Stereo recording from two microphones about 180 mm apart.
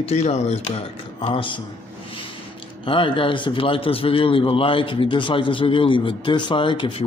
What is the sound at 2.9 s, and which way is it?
A man's voice, 30° left (ahead or behind).